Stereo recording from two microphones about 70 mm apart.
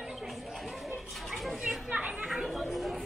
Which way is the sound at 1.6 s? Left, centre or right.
Centre.